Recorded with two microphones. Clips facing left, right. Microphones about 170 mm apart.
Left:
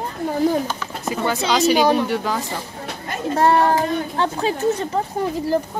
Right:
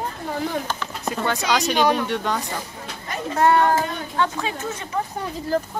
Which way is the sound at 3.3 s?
35° left (ahead or behind).